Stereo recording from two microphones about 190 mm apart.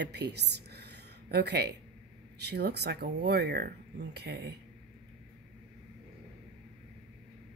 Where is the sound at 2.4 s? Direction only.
60° right (ahead or behind).